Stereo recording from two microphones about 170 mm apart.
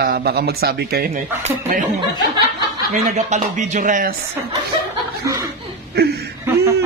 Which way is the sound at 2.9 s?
40° right (ahead or behind).